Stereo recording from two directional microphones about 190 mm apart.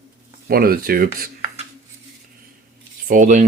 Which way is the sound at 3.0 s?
45° right (ahead or behind).